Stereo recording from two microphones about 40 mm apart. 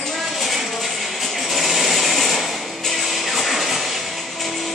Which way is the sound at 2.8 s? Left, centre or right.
Centre.